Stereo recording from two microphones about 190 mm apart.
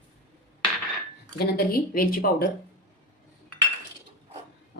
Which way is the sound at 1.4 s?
50° left (ahead or behind).